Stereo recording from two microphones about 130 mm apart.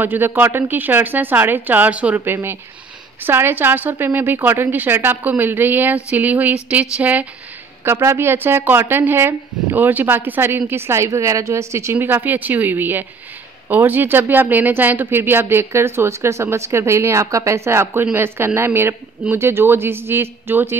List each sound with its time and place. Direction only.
0.0 s a woman's voice: 15° right (ahead or behind)